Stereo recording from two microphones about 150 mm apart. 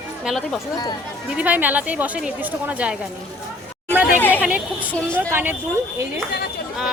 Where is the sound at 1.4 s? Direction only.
10° right (ahead or behind).